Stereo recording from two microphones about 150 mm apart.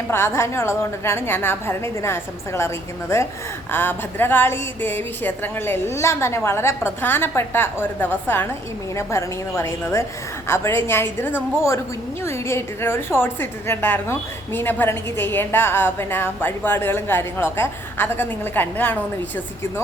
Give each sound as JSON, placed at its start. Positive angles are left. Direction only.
{"t": 0.1, "sound": "a woman's voice", "side_deg": 15}